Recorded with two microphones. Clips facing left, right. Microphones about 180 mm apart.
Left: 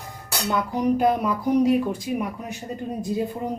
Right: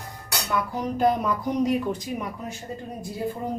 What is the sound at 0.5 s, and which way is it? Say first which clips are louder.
Speech: left 5 dB; 20° left (ahead or behind).